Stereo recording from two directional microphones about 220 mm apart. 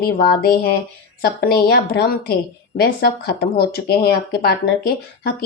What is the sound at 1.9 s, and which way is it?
Speech, 45° left (ahead or behind).